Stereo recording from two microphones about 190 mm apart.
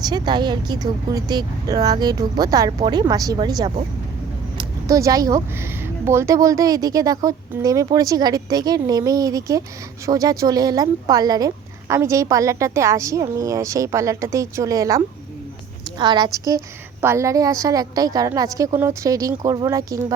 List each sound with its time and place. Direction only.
0.0 s speech: 20° right (ahead or behind)
4.5 s a sound: 15° right (ahead or behind)
6.1 s speech: 15° right (ahead or behind)